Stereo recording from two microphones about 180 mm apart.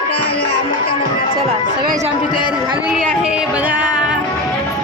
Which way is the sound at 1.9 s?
50° right (ahead or behind).